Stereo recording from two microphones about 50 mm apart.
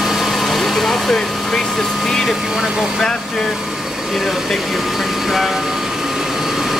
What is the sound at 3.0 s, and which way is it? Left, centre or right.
Speech, centre.